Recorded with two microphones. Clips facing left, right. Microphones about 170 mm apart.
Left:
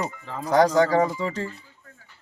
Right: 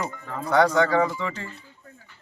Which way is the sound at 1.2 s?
35° left (ahead or behind).